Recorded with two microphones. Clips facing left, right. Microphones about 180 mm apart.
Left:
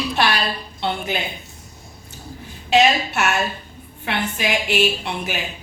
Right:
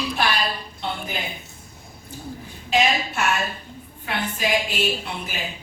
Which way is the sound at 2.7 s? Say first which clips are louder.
Left 5 dB; 75° left (ahead or behind).